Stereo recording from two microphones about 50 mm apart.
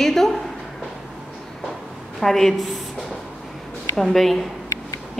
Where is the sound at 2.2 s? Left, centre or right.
Centre.